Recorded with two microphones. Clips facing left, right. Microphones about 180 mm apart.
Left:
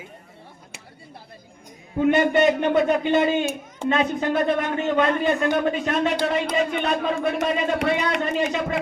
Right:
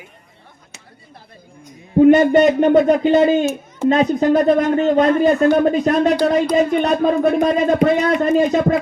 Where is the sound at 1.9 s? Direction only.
40° right (ahead or behind).